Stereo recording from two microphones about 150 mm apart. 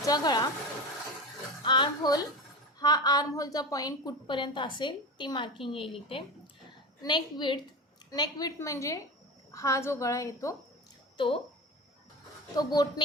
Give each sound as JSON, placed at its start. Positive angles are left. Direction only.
{"t": 0.0, "sound": "a woman's voice", "side_deg": 25}
{"t": 1.6, "sound": "a child's voice", "side_deg": 30}
{"t": 7.0, "sound": "a child's voice", "side_deg": 30}
{"t": 12.5, "sound": "a woman's voice", "side_deg": 25}